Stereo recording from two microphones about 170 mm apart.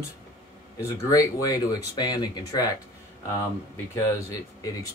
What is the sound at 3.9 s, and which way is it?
Speech, 20° left (ahead or behind).